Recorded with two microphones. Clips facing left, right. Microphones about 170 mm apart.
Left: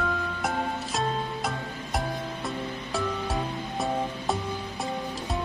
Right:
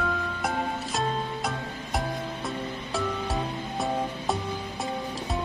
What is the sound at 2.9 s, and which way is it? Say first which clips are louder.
Music: even; centre (ahead or behind).